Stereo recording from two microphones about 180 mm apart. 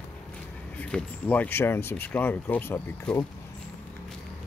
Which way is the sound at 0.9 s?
10° left (ahead or behind).